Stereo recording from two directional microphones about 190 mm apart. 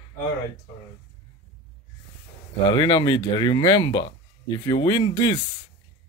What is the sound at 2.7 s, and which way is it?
Speech, 25° left (ahead or behind).